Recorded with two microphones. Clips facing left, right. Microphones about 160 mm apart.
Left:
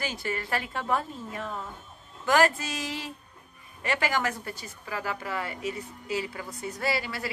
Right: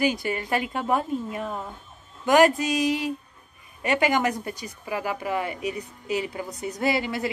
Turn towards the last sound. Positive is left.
turn(degrees=-20)  # may be behind; listen again after turning